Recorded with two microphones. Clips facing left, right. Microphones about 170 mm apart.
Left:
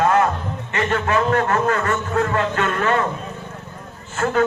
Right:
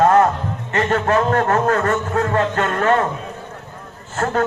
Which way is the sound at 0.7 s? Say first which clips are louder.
Right 3 dB; 40° right (ahead or behind).